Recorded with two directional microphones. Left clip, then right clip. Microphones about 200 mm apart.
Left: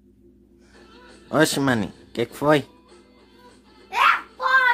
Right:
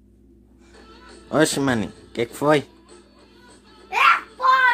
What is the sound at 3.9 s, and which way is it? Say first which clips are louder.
Music: right 2 dB; 10° left (ahead or behind).